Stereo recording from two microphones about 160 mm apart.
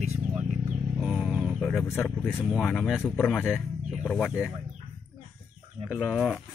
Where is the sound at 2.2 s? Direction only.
Centre (ahead or behind).